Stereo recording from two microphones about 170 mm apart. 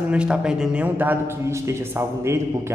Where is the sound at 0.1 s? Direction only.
5° right (ahead or behind).